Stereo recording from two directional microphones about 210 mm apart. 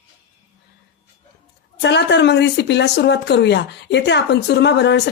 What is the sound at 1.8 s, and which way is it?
Speech, 55° left (ahead or behind).